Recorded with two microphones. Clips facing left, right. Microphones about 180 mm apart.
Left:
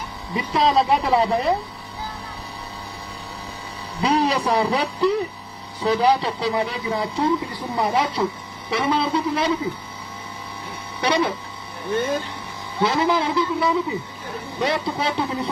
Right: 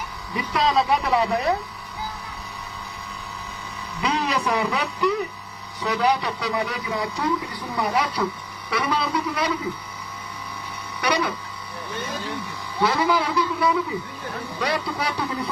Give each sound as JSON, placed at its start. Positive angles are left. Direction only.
{"t": 0.3, "sound": "speech", "side_deg": 25}
{"t": 4.0, "sound": "a man's voice", "side_deg": 30}
{"t": 11.0, "sound": "speech", "side_deg": 25}
{"t": 11.9, "sound": "speech", "side_deg": 55}
{"t": 12.8, "sound": "speech", "side_deg": 25}